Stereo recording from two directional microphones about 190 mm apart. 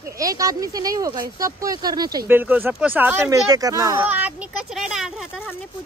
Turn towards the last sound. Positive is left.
turn(degrees=-5)  # may be behind; listen again after turning